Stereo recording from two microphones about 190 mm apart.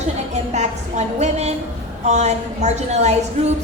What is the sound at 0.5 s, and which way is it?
A woman's voice, 35° right (ahead or behind).